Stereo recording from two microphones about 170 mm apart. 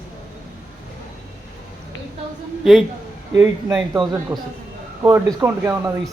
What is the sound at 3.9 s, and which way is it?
A man's voice, 25° right (ahead or behind).